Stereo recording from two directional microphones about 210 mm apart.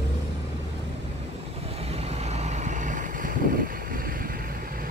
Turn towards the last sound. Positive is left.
turn(degrees=-40)  # may be behind; listen again after turning